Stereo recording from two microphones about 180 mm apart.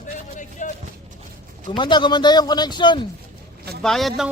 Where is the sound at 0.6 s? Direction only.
45° left (ahead or behind).